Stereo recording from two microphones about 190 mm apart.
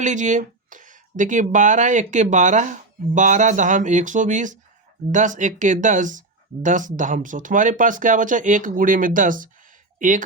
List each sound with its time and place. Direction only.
0.0 s speech: 40° right (ahead or behind)